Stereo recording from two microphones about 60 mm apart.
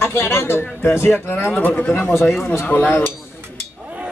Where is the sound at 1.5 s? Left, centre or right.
Left.